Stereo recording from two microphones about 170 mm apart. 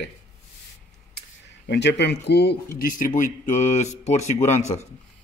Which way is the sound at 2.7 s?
50° left (ahead or behind).